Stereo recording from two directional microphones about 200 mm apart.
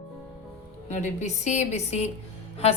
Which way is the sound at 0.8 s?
35° left (ahead or behind).